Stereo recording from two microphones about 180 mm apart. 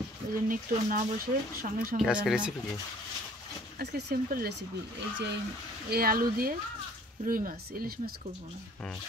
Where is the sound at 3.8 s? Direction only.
65° right (ahead or behind).